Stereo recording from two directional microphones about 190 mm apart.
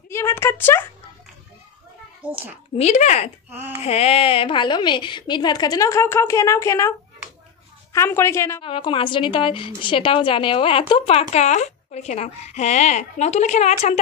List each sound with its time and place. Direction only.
0.1 s speech: 15° left (ahead or behind)
2.2 s a child's voice: 10° right (ahead or behind)
2.8 s a woman's voice: 35° left (ahead or behind); by 6.9 s 15° left (ahead or behind)
7.9 s speech: 15° left (ahead or behind)
8.6 s a woman's voice: 25° left (ahead or behind)